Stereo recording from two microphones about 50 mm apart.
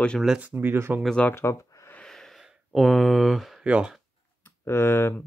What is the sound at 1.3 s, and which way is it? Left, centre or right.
Speech, left.